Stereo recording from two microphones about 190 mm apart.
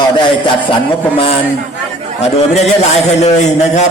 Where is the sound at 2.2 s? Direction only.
35° left (ahead or behind).